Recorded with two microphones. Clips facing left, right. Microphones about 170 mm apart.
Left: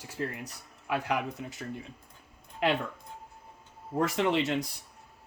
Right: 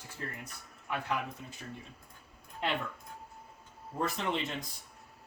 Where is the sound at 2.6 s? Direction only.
90° left.